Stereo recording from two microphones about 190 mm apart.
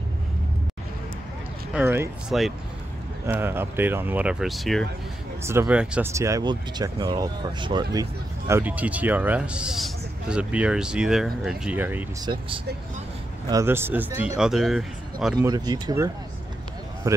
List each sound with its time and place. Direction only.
1.7 s speech: 10° right (ahead or behind)
5.4 s speech: 15° right (ahead or behind)
13.5 s speech: 15° right (ahead or behind)
15.3 s speech: 20° right (ahead or behind)